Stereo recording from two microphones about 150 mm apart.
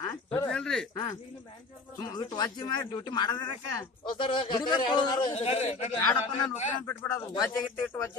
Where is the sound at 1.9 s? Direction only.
30° left (ahead or behind).